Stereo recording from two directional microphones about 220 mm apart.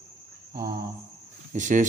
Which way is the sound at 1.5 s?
35° right (ahead or behind).